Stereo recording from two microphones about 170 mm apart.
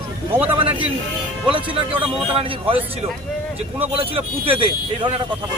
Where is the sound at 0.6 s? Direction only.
35° right (ahead or behind).